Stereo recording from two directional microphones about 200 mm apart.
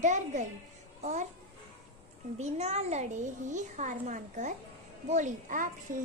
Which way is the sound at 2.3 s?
35° right (ahead or behind).